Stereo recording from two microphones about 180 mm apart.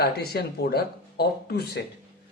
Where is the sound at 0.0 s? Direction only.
60° left (ahead or behind).